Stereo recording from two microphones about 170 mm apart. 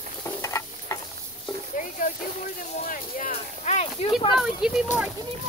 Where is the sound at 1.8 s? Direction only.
50° left (ahead or behind).